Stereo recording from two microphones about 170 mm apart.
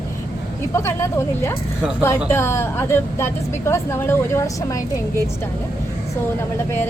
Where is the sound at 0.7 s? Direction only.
15° left (ahead or behind).